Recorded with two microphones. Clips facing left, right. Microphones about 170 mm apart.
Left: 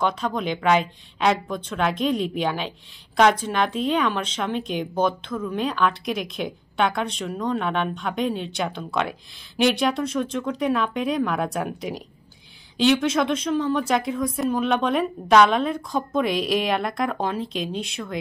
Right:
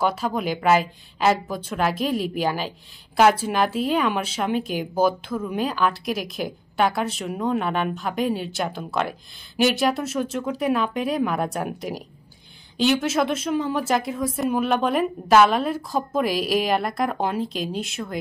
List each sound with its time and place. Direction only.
0.0 s a woman's voice: 5° right (ahead or behind)